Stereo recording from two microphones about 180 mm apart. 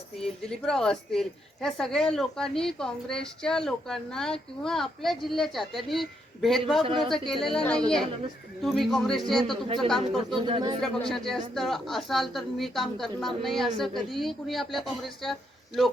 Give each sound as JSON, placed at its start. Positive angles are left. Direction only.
{"t": 0.2, "sound": "a woman's voice", "side_deg": 5}
{"t": 10.4, "sound": "speech", "side_deg": -25}
{"t": 10.8, "sound": "a woman's voice", "side_deg": 5}